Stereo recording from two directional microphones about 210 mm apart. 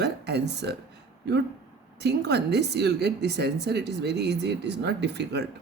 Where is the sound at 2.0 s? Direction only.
50° right (ahead or behind).